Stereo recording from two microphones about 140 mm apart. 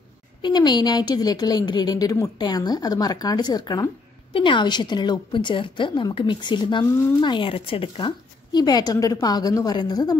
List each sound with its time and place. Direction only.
0.4 s a woman's voice: 30° left (ahead or behind)